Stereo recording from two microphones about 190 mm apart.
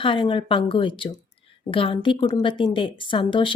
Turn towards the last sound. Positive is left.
turn(degrees=25)  # may be behind; listen again after turning